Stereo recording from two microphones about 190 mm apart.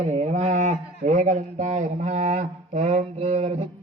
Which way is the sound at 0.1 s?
35° right (ahead or behind).